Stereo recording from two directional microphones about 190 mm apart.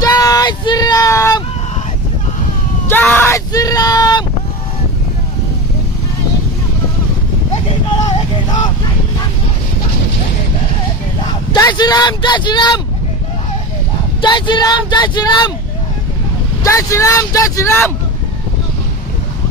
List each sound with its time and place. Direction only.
0.0 s a sound: 20° left (ahead or behind)
2.9 s a sound: 10° left (ahead or behind)
8.5 s vehicle: 20° left (ahead or behind)
11.5 s speech: 20° left (ahead or behind)
14.2 s speech: 25° left (ahead or behind)
16.6 s speech: 15° left (ahead or behind)